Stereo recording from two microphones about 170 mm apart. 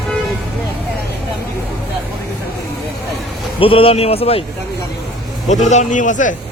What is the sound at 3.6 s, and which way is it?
Speech, 35° left (ahead or behind).